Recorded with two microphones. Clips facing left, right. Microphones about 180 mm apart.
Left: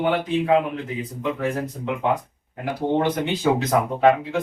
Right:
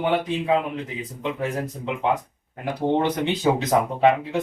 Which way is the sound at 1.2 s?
20° right (ahead or behind).